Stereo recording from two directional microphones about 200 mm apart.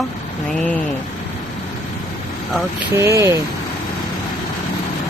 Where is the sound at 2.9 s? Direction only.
15° right (ahead or behind).